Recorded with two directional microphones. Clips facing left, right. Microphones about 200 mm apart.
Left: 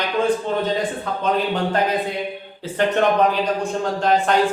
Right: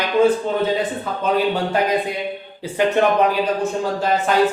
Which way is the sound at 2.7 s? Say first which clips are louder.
Right 1 dB; 10° right (ahead or behind).